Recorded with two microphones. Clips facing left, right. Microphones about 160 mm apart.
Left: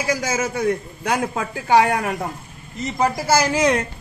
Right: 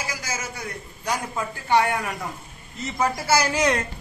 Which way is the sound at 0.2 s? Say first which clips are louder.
Left 11 dB; 65° left (ahead or behind).